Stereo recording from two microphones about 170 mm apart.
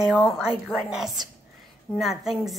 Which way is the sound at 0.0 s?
Centre (ahead or behind).